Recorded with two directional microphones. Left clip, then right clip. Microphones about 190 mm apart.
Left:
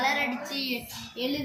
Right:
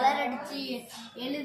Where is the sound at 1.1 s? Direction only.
35° right (ahead or behind).